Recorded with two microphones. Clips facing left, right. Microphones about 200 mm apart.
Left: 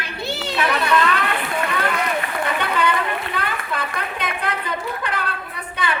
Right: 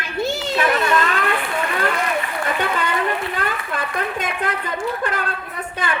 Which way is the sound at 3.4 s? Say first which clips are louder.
Right 1 dB; 45° right (ahead or behind).